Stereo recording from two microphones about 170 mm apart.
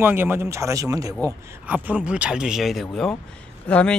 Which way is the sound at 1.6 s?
10° right (ahead or behind).